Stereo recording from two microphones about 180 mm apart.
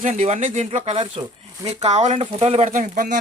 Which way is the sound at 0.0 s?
40° right (ahead or behind).